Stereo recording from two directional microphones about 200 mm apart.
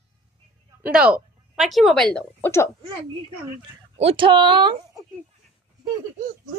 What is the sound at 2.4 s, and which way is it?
Speech, 15° left (ahead or behind).